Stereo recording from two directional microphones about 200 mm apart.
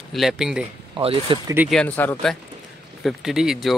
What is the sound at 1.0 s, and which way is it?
Speech, 25° right (ahead or behind).